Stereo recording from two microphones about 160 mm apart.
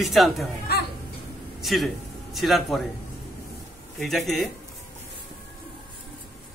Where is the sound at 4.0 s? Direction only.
Centre (ahead or behind).